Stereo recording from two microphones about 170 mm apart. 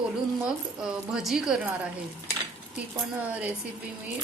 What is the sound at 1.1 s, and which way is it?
Speech, 5° right (ahead or behind).